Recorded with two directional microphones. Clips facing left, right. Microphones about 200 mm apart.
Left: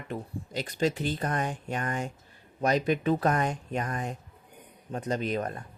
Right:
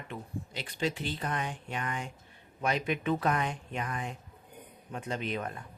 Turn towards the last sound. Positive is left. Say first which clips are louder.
# left 5 dB
turn(degrees=40)  # may be behind; listen again after turning